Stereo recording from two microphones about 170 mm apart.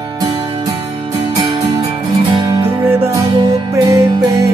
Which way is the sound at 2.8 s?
15° right (ahead or behind).